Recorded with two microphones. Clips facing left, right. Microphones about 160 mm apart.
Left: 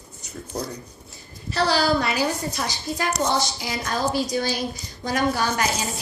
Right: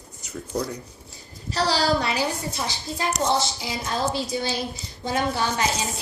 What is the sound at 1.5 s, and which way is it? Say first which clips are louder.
A woman's voice: left 1 dB; 35° right (ahead or behind).